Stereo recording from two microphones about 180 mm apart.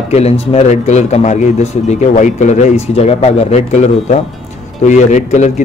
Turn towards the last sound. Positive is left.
turn(degrees=40)  # may be behind; listen again after turning